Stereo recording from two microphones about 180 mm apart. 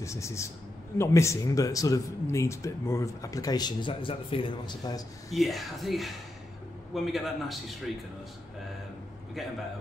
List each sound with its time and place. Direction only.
0.0 s a man's voice: 15° left (ahead or behind)
5.3 s speech: centre (ahead or behind)